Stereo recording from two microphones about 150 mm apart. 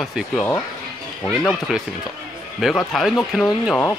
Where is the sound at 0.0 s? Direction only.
Centre (ahead or behind).